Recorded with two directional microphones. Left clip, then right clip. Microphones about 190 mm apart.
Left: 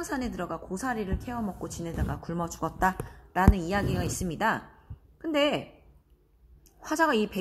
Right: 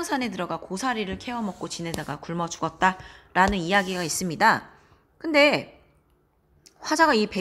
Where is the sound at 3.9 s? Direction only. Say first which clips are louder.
Right 6 dB; 20° right (ahead or behind).